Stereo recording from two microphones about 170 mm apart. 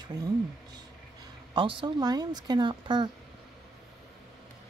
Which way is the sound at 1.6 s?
30° right (ahead or behind).